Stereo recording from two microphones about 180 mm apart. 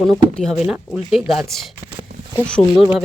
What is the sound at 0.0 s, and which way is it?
Speech, centre (ahead or behind).